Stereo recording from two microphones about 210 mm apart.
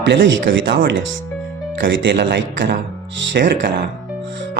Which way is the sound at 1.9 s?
55° right (ahead or behind).